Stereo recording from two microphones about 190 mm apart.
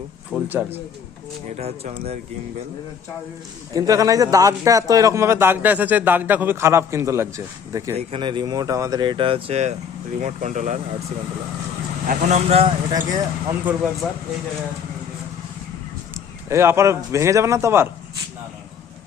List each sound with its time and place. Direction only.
0.3 s a man's voice: 10° right (ahead or behind)
1.5 s speech: 35° right (ahead or behind)
3.8 s a man's voice: 20° right (ahead or behind)
7.9 s speech: 25° right (ahead or behind)
12.0 s speech: 40° right (ahead or behind)
13.7 s a man's voice: 5° right (ahead or behind)
16.1 s a man's voice: 15° right (ahead or behind)